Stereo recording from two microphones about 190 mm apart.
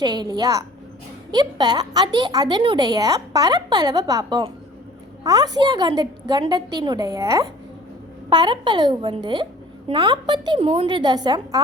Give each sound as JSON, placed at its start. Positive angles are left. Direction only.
{"t": 0.0, "sound": "a woman's voice", "side_deg": -20}